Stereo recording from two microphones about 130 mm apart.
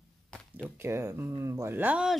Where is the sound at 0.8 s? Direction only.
20° right (ahead or behind).